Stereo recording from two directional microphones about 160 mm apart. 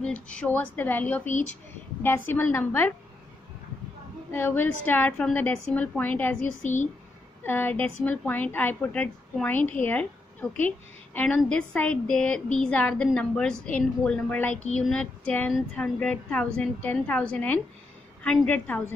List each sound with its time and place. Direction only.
0.0 s a woman's voice: 5° left (ahead or behind)
4.3 s a woman's voice: 10° left (ahead or behind)
7.4 s a woman's voice: 10° left (ahead or behind)
14.5 s speech: 45° left (ahead or behind)
14.9 s a woman's voice: 5° left (ahead or behind)